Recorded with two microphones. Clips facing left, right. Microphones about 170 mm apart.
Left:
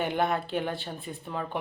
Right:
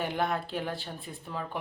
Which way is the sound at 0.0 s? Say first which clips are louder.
Left 3 dB; centre (ahead or behind).